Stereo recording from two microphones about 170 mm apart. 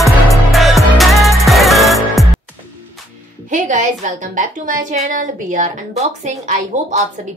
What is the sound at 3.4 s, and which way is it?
A woman's voice, 50° right (ahead or behind).